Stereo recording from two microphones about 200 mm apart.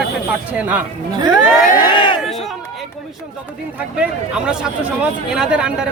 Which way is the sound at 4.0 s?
5° right (ahead or behind).